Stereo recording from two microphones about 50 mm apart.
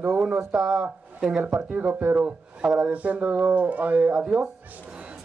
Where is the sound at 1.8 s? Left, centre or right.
Right.